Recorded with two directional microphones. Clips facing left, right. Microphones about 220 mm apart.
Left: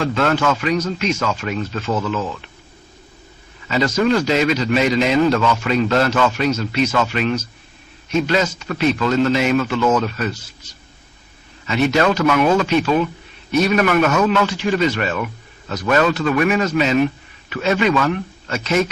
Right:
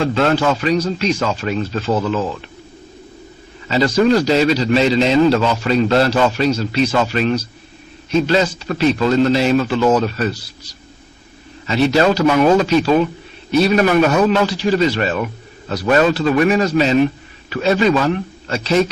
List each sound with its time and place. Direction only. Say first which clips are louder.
0.0 s speech: right 2 dB; 35° right (ahead or behind)
3.7 s speech: right 3 dB; 30° right (ahead or behind)